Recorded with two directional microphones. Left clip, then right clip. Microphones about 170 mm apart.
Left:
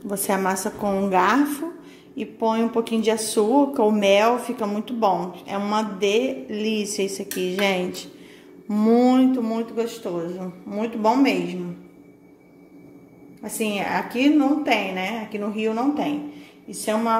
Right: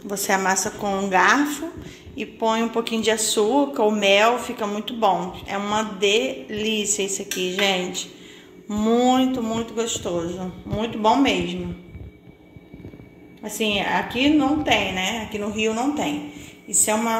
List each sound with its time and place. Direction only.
0.0 s speech: 40° left (ahead or behind); by 11.3 s 5° left (ahead or behind)
13.6 s a woman's voice: 5° left (ahead or behind)